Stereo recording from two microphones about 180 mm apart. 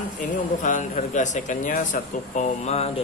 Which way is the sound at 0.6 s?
45° left (ahead or behind).